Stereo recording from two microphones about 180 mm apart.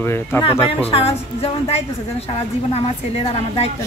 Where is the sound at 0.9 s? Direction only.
35° left (ahead or behind).